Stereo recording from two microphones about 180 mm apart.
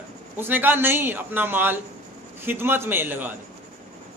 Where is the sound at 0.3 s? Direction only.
10° right (ahead or behind).